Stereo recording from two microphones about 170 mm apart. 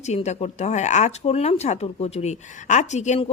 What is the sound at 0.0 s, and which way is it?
Speech, 40° left (ahead or behind).